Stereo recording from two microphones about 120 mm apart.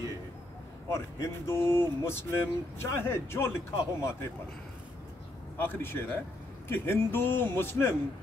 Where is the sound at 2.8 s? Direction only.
20° left (ahead or behind).